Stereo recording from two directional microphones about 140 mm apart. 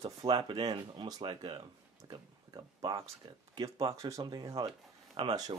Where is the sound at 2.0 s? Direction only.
30° right (ahead or behind).